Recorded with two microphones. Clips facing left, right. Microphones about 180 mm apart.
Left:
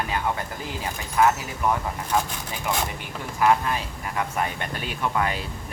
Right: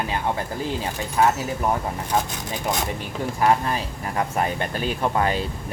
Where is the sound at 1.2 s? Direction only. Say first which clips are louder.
Even; 30° right (ahead or behind).